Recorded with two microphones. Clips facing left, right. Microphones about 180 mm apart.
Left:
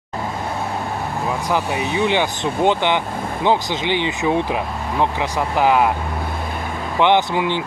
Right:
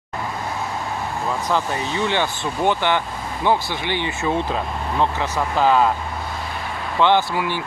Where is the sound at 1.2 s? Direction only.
15° left (ahead or behind).